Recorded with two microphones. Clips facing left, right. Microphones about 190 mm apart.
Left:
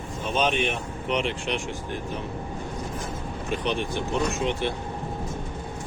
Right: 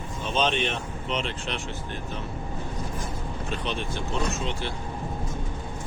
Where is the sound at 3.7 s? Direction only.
15° left (ahead or behind).